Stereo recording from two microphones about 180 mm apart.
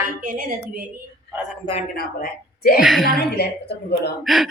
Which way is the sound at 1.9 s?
60° left (ahead or behind).